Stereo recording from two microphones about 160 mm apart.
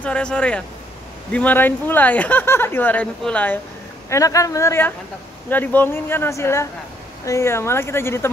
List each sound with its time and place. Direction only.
0.0 s speech: 5° left (ahead or behind)
4.1 s speech: 20° left (ahead or behind)